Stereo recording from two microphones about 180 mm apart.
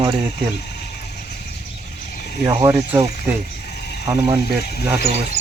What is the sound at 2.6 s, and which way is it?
Speech, 15° right (ahead or behind).